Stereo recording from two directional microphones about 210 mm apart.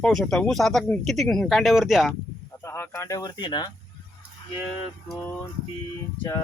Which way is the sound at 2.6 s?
10° left (ahead or behind).